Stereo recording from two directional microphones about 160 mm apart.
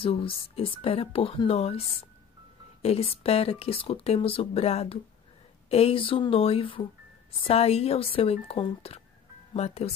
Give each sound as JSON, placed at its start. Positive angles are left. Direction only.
{"t": 0.0, "sound": "speech", "side_deg": 35}